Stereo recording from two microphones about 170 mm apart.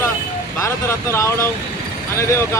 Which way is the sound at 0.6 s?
15° left (ahead or behind).